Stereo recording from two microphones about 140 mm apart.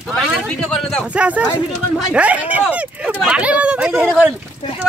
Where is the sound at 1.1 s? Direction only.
10° right (ahead or behind).